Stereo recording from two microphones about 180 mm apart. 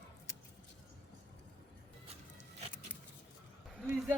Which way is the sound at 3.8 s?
Centre (ahead or behind).